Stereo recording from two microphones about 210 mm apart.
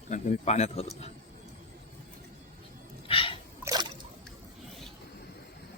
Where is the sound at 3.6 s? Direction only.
20° right (ahead or behind).